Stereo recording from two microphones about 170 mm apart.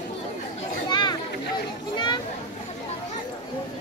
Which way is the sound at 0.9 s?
25° left (ahead or behind).